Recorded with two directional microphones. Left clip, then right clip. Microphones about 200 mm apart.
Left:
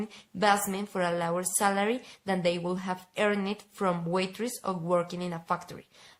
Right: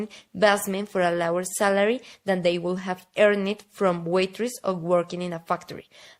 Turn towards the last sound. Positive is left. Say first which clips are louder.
# right 4 dB
turn(degrees=-35)  # may be behind; listen again after turning